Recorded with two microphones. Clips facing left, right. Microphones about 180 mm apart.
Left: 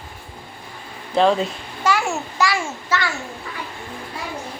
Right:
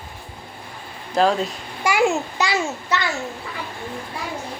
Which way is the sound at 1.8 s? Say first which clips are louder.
Right 2 dB; 15° right (ahead or behind).